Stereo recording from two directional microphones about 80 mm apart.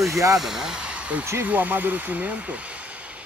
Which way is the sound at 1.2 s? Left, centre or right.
Right.